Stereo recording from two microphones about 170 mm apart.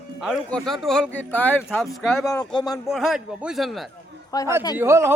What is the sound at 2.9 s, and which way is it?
Speech, centre (ahead or behind).